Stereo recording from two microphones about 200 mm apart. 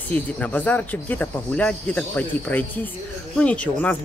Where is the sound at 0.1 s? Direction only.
10° left (ahead or behind).